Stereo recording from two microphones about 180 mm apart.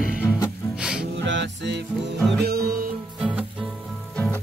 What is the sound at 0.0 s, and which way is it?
Music, centre (ahead or behind).